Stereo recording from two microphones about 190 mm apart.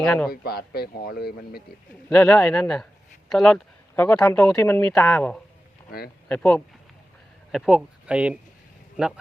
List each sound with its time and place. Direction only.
0.0 s speech: 5° left (ahead or behind)
0.3 s speech: 55° left (ahead or behind)
2.0 s speech: 5° left (ahead or behind)